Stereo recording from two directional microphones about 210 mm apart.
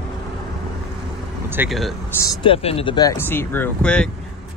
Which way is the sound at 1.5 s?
10° right (ahead or behind).